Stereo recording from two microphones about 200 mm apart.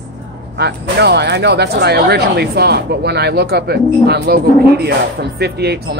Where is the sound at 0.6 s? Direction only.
55° right (ahead or behind).